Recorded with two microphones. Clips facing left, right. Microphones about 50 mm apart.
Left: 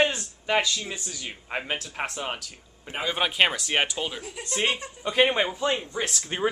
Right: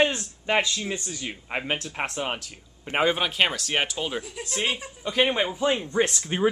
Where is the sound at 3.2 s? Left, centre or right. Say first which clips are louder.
Left 1 dB; centre.